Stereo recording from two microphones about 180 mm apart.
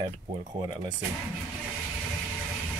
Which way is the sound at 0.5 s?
25° right (ahead or behind).